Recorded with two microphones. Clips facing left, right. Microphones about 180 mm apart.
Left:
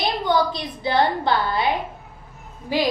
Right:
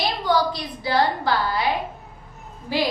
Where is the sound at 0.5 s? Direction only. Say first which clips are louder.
Left 1 dB; 25° left (ahead or behind).